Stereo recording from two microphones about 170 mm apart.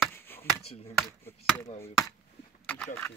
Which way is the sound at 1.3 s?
15° left (ahead or behind).